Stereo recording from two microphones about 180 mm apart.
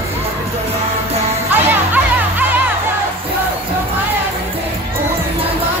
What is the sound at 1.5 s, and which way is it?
Music, 10° right (ahead or behind).